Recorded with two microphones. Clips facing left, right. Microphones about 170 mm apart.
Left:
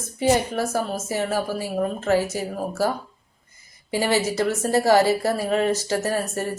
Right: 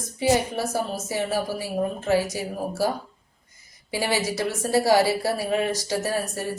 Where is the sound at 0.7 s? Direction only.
15° right (ahead or behind).